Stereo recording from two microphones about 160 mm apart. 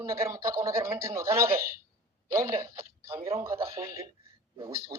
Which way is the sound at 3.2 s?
15° right (ahead or behind).